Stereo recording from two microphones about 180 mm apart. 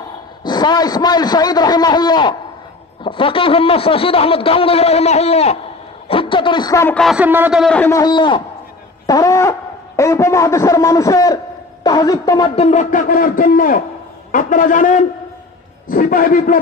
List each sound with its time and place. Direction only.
0.5 s a man's voice: 25° left (ahead or behind)
6.0 s a sound: 30° left (ahead or behind)
7.0 s speech: 5° right (ahead or behind)
7.6 s a man's voice: 5° left (ahead or behind)
7.9 s a man's voice: 25° left (ahead or behind)
12.5 s a man's voice: 40° left (ahead or behind)